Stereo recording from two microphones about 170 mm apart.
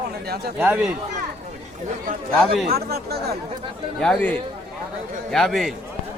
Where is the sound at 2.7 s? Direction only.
65° right (ahead or behind).